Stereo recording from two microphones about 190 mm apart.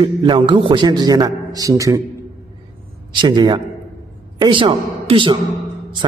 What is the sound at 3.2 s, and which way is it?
A man's voice, 25° right (ahead or behind).